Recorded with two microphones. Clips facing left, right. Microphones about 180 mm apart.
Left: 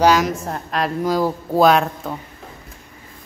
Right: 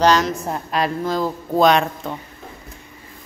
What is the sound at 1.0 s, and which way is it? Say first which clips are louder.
A woman's voice: left 3 dB; 10° left (ahead or behind).